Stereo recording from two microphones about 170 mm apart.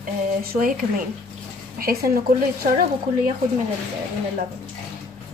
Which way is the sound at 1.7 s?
60° right (ahead or behind).